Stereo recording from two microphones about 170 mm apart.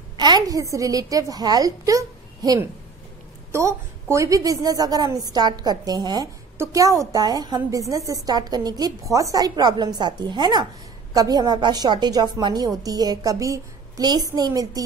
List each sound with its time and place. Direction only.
0.2 s a woman's voice: 25° right (ahead or behind)